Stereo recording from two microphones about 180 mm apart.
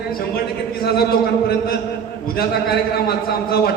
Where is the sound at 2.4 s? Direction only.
60° left (ahead or behind).